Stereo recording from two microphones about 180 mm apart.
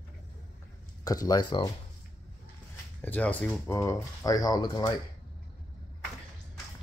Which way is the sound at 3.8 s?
20° left (ahead or behind).